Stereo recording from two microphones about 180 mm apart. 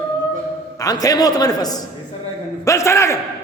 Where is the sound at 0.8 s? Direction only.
20° left (ahead or behind).